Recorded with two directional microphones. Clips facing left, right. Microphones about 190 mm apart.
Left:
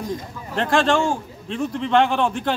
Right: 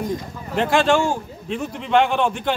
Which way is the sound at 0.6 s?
Centre (ahead or behind).